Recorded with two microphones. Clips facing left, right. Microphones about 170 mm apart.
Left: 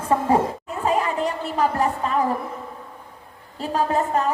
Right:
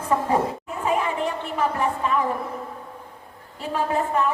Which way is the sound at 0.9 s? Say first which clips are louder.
Left 2 dB; 40° left (ahead or behind).